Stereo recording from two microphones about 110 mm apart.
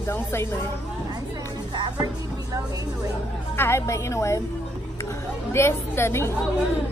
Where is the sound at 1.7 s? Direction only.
40° right (ahead or behind).